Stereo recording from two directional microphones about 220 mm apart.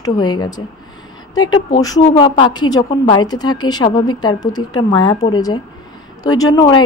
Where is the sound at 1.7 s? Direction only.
20° left (ahead or behind).